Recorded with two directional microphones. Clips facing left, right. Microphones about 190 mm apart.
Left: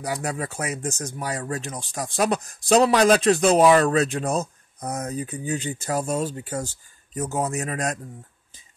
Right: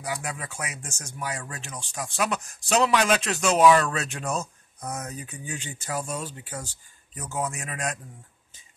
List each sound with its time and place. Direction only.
0.0 s speech: 40° left (ahead or behind)